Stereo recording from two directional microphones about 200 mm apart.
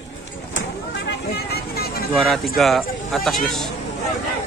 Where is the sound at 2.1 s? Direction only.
Centre (ahead or behind).